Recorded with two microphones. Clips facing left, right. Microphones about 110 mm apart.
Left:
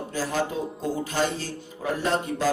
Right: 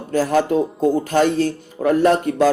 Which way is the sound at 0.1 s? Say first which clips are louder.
Right 11 dB; 60° right (ahead or behind).